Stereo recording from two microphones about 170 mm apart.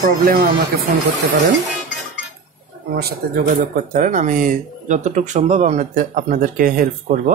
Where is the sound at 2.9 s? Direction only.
60° right (ahead or behind).